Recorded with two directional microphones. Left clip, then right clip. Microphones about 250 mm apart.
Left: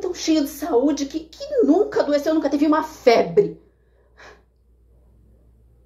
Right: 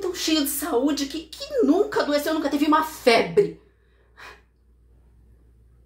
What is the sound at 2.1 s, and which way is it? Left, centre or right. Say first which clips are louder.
Speech: left 3 dB; right.